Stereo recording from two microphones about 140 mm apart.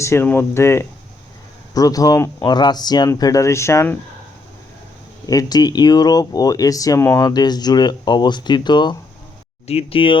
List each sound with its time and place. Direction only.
0.0 s speech: 20° left (ahead or behind)
5.2 s speech: 25° left (ahead or behind)
9.6 s speech: 45° left (ahead or behind)